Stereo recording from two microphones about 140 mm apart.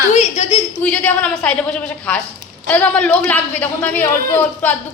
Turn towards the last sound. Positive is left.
turn(degrees=15)  # may be behind; listen again after turning